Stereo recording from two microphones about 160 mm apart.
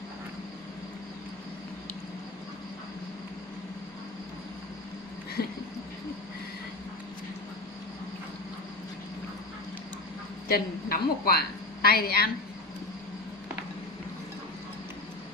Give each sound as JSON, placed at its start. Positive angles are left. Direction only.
{"t": 10.5, "sound": "a woman's voice", "side_deg": 75}